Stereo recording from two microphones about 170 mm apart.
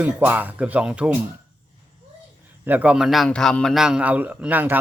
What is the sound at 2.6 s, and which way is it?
A man's voice, 10° right (ahead or behind).